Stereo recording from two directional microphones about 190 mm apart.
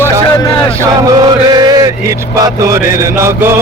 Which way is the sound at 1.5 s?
20° right (ahead or behind).